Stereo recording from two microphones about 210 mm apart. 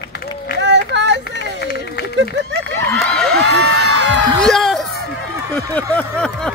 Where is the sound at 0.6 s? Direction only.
55° right (ahead or behind).